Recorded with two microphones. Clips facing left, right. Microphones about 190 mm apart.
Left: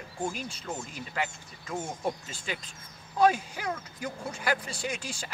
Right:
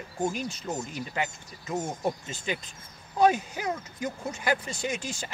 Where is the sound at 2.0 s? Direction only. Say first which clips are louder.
Right 3 dB; centre (ahead or behind).